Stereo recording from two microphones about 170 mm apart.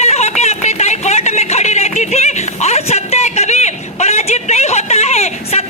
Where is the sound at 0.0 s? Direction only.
40° left (ahead or behind).